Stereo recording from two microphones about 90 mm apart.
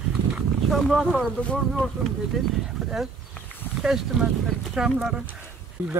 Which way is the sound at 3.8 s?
5° right (ahead or behind).